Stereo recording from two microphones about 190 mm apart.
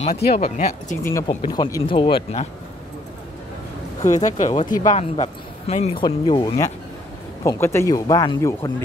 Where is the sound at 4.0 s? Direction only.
40° left (ahead or behind).